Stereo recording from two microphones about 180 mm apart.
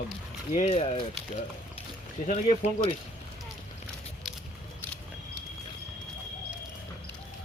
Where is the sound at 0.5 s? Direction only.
35° left (ahead or behind).